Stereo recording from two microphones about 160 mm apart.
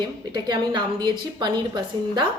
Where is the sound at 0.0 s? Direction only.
25° right (ahead or behind).